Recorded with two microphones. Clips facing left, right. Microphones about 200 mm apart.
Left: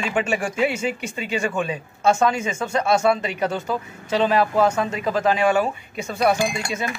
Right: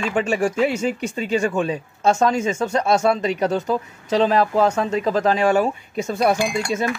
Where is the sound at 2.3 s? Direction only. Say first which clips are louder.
Right 5 dB; 40° right (ahead or behind).